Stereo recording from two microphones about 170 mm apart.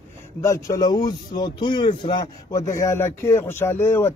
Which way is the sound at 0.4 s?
15° left (ahead or behind).